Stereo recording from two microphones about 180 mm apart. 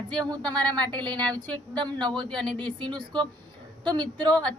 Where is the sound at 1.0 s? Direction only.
5° left (ahead or behind).